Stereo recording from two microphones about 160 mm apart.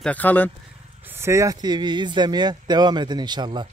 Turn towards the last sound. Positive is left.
turn(degrees=-25)  # may be behind; listen again after turning